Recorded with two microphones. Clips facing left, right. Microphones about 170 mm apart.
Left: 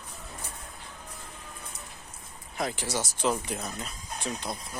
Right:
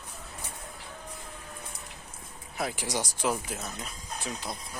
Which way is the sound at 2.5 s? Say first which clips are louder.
Left 1 dB; 10° right (ahead or behind).